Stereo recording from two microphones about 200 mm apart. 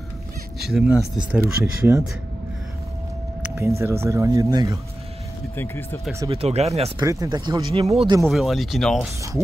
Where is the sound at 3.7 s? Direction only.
15° right (ahead or behind).